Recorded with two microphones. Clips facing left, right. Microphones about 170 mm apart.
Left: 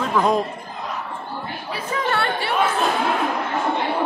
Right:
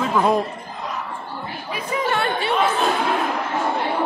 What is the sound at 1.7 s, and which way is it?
Chatter, 20° right (ahead or behind).